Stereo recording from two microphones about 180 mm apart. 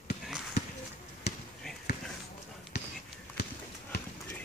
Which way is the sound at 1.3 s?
60° left (ahead or behind).